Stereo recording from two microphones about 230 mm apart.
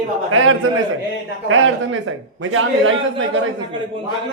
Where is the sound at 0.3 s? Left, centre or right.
Right.